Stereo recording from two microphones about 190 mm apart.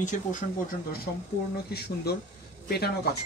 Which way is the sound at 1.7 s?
60° left (ahead or behind).